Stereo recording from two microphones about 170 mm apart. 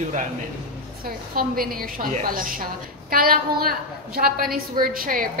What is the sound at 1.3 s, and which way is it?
A woman's voice, 60° right (ahead or behind).